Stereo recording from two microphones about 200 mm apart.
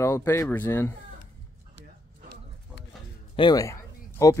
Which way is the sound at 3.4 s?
20° left (ahead or behind).